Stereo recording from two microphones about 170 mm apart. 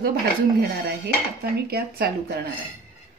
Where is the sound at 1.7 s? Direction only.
65° right (ahead or behind).